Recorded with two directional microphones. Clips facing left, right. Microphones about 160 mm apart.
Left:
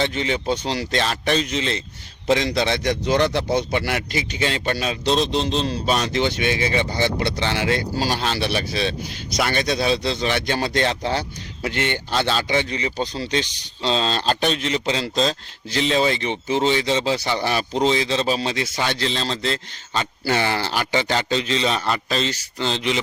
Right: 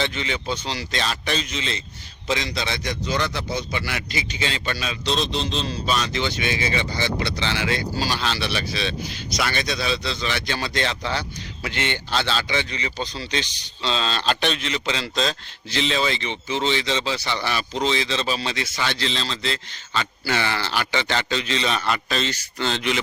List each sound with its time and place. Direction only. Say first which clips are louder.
0.0 s a man's voice: left 4 dB; 45° left (ahead or behind); by 23.0 s 30° left (ahead or behind)